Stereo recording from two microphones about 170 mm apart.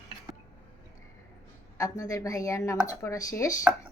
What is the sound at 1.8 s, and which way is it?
A woman's voice, 20° left (ahead or behind).